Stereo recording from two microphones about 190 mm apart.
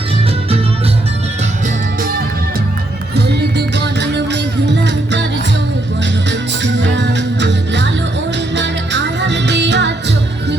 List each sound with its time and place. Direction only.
3.8 s music: 65° right (ahead or behind)
6.6 s music: 70° right (ahead or behind)